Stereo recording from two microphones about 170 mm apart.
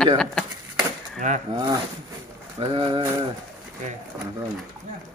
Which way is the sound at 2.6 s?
30° right (ahead or behind).